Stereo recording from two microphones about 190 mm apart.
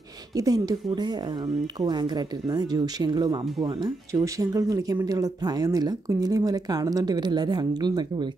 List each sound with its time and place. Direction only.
0.3 s speech: 20° right (ahead or behind)